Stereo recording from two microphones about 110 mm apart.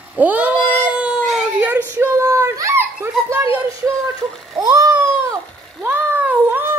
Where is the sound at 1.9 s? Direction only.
15° right (ahead or behind).